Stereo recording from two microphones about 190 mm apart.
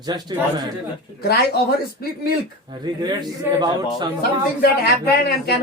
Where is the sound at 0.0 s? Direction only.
20° right (ahead or behind).